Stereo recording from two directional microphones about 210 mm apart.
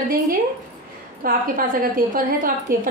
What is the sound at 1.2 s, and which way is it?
A woman's voice, 40° right (ahead or behind).